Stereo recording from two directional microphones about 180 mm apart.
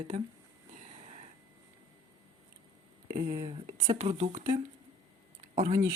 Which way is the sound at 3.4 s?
20° right (ahead or behind).